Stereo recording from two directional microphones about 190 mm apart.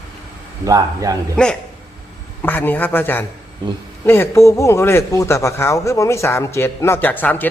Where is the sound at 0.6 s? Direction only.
20° right (ahead or behind).